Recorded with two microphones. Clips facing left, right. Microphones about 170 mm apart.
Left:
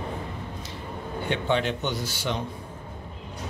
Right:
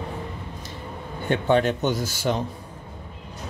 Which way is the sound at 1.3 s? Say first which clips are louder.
Right 6 dB; 45° right (ahead or behind).